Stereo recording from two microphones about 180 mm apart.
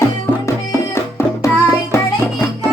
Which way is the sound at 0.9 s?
15° left (ahead or behind).